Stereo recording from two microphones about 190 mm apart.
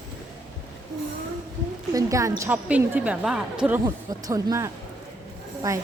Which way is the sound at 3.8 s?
20° right (ahead or behind).